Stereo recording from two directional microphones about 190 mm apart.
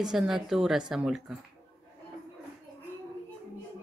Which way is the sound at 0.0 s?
5° right (ahead or behind).